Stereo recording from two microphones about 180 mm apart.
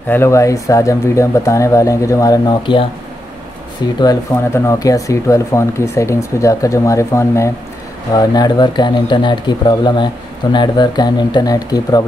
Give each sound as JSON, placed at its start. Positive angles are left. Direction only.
{"t": 0.1, "sound": "speech", "side_deg": 15}
{"t": 4.0, "sound": "speech", "side_deg": 15}